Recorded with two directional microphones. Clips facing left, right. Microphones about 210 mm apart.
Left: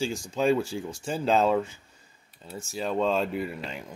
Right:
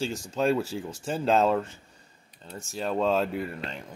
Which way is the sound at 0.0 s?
Centre (ahead or behind).